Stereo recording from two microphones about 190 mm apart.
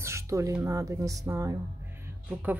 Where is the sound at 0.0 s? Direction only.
15° right (ahead or behind).